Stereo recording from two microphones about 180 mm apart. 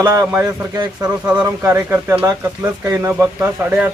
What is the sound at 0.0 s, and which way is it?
A man's voice, 15° right (ahead or behind).